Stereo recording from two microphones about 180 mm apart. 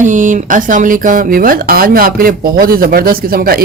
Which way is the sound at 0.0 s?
45° right (ahead or behind).